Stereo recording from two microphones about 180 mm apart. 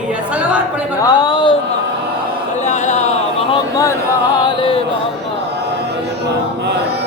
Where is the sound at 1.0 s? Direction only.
25° left (ahead or behind).